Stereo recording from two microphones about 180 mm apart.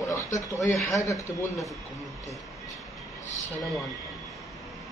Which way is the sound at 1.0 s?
15° left (ahead or behind).